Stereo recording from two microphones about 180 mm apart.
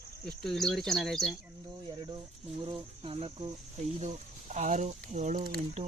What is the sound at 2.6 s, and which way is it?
Speech, 25° right (ahead or behind).